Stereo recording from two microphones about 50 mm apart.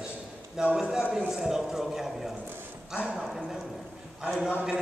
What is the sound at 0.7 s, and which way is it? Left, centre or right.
A man's voice, centre.